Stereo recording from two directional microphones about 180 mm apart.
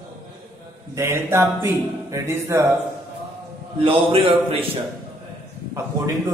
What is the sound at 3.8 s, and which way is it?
Speech, 30° right (ahead or behind).